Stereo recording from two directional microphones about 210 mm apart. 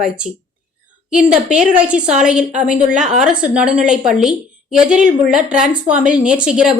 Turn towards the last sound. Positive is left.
turn(degrees=-5)  # may be behind; listen again after turning